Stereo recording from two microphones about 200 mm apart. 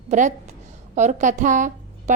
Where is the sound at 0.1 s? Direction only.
35° right (ahead or behind).